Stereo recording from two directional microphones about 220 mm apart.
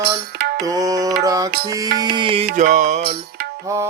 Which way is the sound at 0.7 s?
15° right (ahead or behind).